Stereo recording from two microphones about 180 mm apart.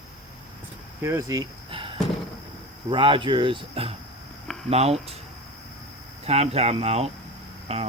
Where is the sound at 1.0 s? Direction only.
15° right (ahead or behind).